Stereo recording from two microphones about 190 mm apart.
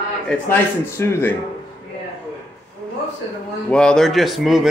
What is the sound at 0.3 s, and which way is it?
A man's voice, 10° left (ahead or behind).